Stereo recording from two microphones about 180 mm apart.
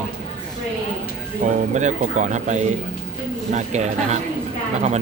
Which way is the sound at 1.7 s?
40° right (ahead or behind).